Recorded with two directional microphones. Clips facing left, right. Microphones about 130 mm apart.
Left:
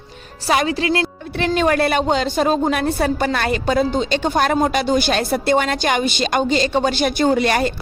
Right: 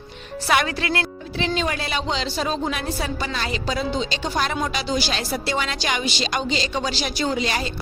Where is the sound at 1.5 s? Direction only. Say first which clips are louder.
Left 10 dB; 55° left (ahead or behind).